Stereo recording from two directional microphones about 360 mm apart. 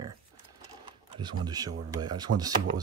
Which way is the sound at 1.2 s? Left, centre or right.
Centre.